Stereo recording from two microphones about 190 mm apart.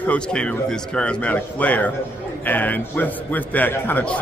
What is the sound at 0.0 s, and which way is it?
A man's voice, 5° left (ahead or behind).